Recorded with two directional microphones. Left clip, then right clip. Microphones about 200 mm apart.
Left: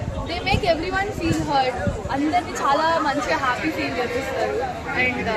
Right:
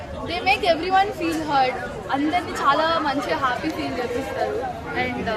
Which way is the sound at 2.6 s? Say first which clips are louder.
Right 1 dB; 10° right (ahead or behind).